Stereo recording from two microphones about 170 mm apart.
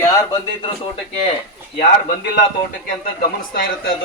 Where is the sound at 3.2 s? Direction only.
60° left (ahead or behind).